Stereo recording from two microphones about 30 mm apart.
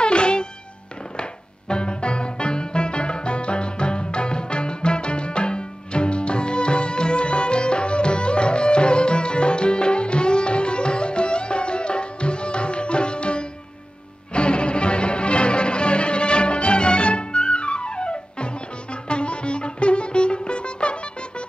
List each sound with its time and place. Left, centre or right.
0.0 s music: left